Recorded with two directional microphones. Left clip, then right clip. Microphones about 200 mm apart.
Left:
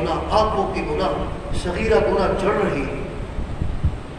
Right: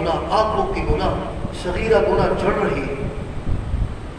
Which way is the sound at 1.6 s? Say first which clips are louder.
Right 1 dB; 15° left (ahead or behind).